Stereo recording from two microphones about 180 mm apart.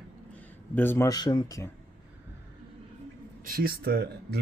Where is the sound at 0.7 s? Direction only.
10° left (ahead or behind).